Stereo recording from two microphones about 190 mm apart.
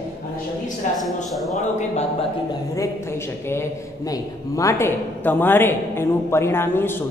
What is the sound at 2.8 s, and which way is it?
A woman's voice, 15° left (ahead or behind).